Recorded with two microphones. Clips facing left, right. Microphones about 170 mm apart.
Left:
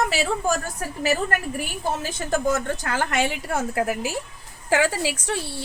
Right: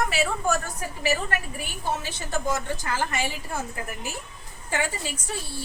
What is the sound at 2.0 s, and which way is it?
A woman's voice, 45° left (ahead or behind).